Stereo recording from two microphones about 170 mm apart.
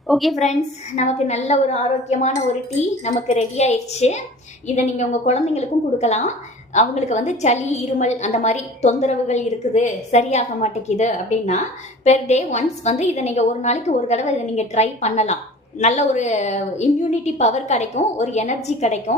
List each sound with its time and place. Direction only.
0.1 s a woman's voice: centre (ahead or behind)
0.9 s a woman's voice: 40° left (ahead or behind)